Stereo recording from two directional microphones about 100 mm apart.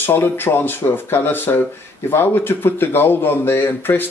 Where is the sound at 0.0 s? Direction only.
20° left (ahead or behind).